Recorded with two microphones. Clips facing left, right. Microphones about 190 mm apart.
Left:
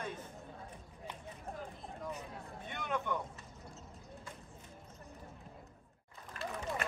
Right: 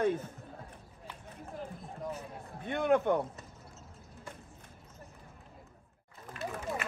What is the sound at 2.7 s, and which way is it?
Speech, 55° right (ahead or behind).